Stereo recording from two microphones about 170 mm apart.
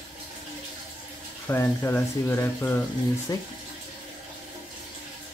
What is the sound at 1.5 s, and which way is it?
Speech, 15° left (ahead or behind).